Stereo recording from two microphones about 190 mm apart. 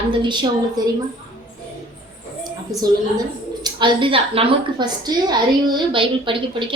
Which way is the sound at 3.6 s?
25° right (ahead or behind).